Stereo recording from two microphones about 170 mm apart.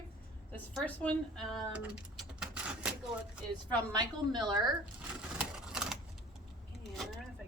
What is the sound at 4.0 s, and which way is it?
Speech, 25° right (ahead or behind).